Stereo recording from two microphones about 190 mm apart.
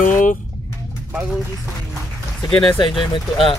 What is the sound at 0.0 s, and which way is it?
Chicken, 45° left (ahead or behind).